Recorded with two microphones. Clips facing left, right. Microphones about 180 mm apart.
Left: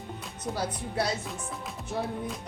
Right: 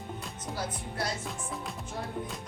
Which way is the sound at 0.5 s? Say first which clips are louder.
Left 5 dB; 65° left (ahead or behind).